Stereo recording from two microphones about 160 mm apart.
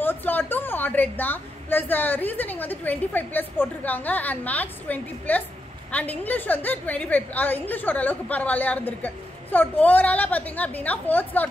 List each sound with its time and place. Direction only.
0.0 s a woman's voice: 10° left (ahead or behind)